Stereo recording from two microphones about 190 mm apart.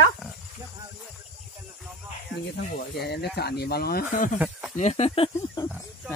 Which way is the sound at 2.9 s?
60° left (ahead or behind).